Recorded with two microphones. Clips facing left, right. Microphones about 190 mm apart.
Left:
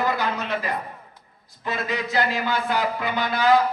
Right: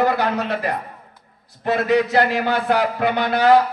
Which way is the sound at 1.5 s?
65° right (ahead or behind).